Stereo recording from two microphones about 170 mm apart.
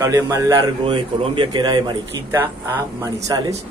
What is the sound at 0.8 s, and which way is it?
A man's voice, 30° right (ahead or behind).